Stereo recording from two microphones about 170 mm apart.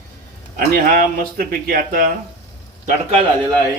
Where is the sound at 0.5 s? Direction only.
60° right (ahead or behind).